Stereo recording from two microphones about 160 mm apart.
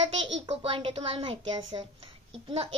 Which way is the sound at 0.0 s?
35° right (ahead or behind).